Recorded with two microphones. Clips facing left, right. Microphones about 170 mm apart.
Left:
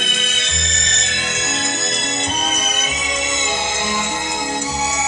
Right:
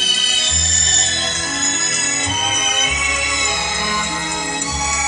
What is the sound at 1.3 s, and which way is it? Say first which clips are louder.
Music: left 1 dB; 90° left.